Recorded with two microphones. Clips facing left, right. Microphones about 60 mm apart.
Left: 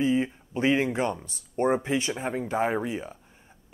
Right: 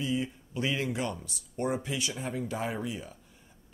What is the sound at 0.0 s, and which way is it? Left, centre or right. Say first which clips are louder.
Speech: left 7 dB; left.